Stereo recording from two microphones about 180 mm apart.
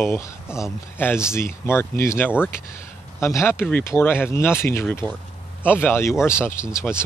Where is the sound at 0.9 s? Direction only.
10° left (ahead or behind).